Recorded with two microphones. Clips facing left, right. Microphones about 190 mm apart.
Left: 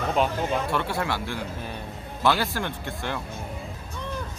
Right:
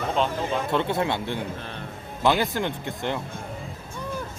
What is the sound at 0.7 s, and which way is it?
Speech, 20° right (ahead or behind).